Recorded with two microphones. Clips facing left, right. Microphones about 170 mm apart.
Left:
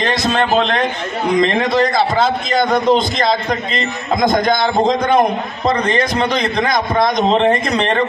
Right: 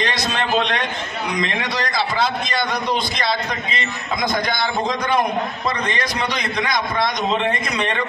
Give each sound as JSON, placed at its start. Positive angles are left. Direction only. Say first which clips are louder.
{"t": 0.0, "sound": "a man's voice", "louder": "left 6 dB", "side_deg": 50}